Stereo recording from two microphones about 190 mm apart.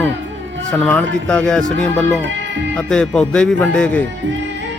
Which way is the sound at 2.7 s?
5° left (ahead or behind).